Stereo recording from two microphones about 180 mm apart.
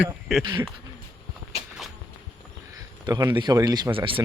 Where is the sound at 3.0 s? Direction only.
20° right (ahead or behind).